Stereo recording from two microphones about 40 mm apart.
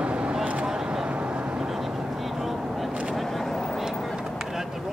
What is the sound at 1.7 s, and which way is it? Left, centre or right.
Vehicle, centre.